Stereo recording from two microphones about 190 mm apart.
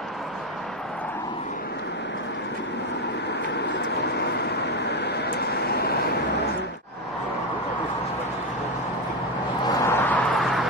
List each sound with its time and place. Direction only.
4.0 s vehicle: 60° left (ahead or behind)
9.7 s vehicle: 15° left (ahead or behind)